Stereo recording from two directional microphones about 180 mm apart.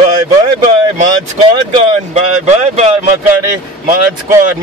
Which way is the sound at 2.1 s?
40° right (ahead or behind).